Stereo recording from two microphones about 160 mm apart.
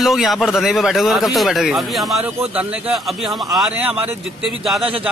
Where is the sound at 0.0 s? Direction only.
Centre (ahead or behind).